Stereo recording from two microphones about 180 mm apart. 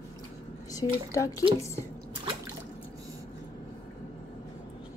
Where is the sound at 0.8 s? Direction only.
30° left (ahead or behind).